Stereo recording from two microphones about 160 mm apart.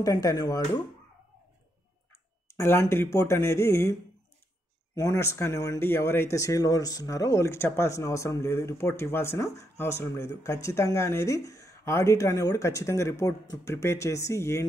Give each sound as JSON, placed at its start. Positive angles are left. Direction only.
{"t": 0.0, "sound": "speech", "side_deg": 25}
{"t": 2.4, "sound": "speech", "side_deg": 15}
{"t": 4.9, "sound": "speech", "side_deg": 20}